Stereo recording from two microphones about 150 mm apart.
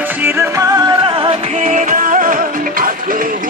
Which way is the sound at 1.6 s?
60° right (ahead or behind).